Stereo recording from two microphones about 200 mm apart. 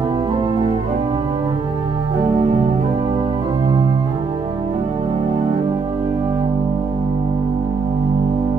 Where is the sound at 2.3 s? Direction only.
35° right (ahead or behind).